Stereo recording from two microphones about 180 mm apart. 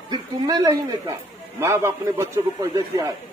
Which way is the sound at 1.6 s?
15° right (ahead or behind).